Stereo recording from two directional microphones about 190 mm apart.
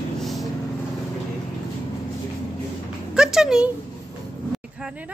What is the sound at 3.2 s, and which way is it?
Speech, centre (ahead or behind).